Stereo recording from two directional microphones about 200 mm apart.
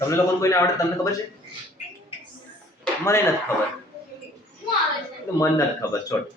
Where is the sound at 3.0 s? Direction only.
15° left (ahead or behind).